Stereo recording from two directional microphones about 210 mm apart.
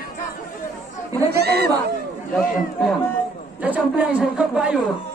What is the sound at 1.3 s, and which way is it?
Chatter, 50° right (ahead or behind).